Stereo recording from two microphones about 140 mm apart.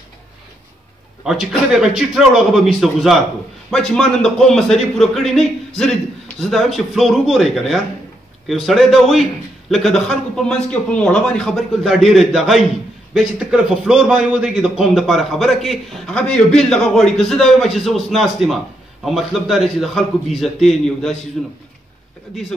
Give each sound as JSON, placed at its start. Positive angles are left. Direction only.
{"t": 1.2, "sound": "a man's voice", "side_deg": 0}